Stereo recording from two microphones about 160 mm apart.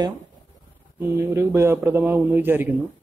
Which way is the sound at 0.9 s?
15° right (ahead or behind).